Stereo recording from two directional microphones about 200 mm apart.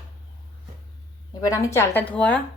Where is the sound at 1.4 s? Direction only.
15° left (ahead or behind).